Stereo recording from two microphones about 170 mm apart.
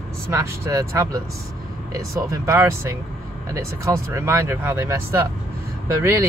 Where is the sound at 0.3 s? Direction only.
20° right (ahead or behind).